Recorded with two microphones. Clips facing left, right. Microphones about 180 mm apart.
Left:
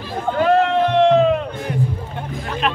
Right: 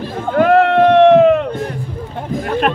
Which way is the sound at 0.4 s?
65° right (ahead or behind).